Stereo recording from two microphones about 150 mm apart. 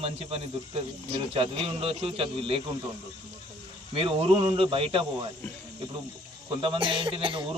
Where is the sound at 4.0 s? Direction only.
40° right (ahead or behind).